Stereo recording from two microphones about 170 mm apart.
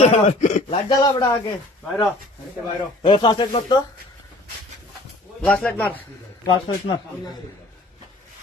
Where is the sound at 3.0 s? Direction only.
30° left (ahead or behind).